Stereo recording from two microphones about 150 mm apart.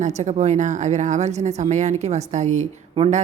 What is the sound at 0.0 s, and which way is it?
Speech, 50° right (ahead or behind).